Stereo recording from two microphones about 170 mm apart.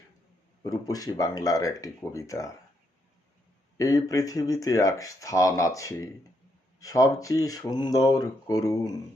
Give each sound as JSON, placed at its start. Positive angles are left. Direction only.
{"t": 0.6, "sound": "speech", "side_deg": 20}
{"t": 3.8, "sound": "speech", "side_deg": 20}